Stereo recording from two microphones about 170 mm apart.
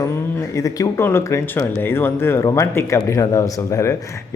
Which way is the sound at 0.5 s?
20° left (ahead or behind).